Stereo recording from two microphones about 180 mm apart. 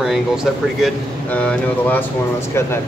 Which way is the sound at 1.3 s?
10° left (ahead or behind).